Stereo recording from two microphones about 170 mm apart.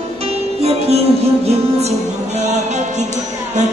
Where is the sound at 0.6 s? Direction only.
35° right (ahead or behind).